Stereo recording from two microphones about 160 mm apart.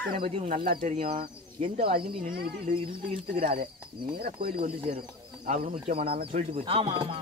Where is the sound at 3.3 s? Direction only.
65° right (ahead or behind).